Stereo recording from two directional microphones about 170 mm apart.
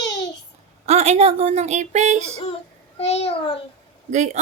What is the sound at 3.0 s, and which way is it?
Speech, 40° left (ahead or behind).